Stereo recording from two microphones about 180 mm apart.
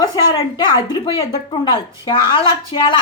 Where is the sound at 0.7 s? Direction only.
30° left (ahead or behind).